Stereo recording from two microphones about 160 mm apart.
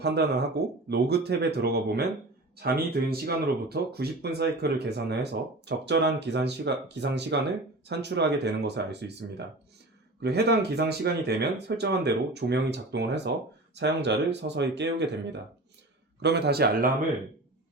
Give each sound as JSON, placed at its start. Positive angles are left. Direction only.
{"t": 0.0, "sound": "speech", "side_deg": -90}
{"t": 2.6, "sound": "speech", "side_deg": -75}
{"t": 10.2, "sound": "a man's voice", "side_deg": -90}